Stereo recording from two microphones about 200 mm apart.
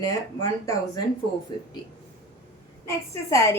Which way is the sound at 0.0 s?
15° left (ahead or behind).